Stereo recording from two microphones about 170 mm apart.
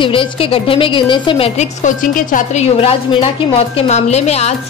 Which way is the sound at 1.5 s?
50° left (ahead or behind).